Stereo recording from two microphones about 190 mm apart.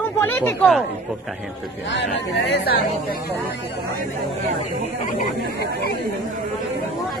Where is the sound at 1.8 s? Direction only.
70° left (ahead or behind).